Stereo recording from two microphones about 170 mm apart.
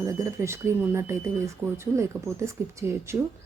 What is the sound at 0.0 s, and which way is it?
Speech, 20° right (ahead or behind).